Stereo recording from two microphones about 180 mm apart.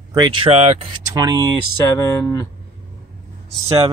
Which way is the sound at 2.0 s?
20° left (ahead or behind).